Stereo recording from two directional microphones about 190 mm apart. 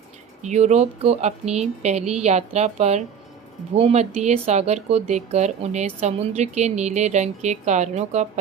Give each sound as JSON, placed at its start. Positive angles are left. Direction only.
{"t": 0.4, "sound": "speech", "side_deg": -35}